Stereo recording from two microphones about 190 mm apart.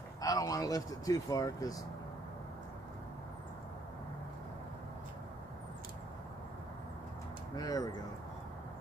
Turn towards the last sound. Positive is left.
turn(degrees=20)  # may be behind; listen again after turning